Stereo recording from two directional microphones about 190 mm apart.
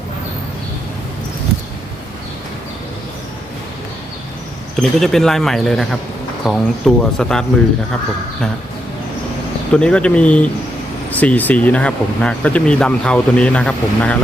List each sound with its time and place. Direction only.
4.8 s speech: centre (ahead or behind)
9.7 s speech: 5° left (ahead or behind)